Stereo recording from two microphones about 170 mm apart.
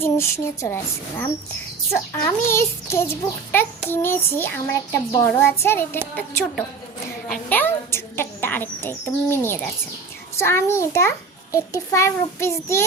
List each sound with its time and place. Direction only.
0.0 s child singing: 15° left (ahead or behind)
2.5 s child singing: 15° left (ahead or behind)
7.3 s a sound: 10° left (ahead or behind)
10.3 s child singing: 15° left (ahead or behind)